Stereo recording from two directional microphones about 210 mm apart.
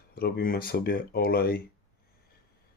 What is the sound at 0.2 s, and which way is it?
Speech, 45° left (ahead or behind).